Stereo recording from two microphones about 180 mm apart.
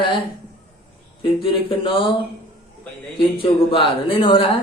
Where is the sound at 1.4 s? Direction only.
30° left (ahead or behind).